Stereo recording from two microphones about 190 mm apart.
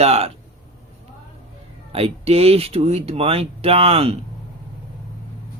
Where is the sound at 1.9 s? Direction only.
30° right (ahead or behind).